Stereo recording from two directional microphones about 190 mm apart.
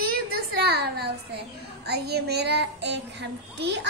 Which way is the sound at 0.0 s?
55° right (ahead or behind).